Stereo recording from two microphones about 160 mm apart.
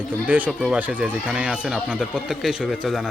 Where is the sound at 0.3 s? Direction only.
10° right (ahead or behind).